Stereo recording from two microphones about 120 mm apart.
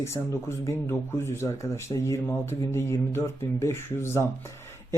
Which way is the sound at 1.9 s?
35° left (ahead or behind).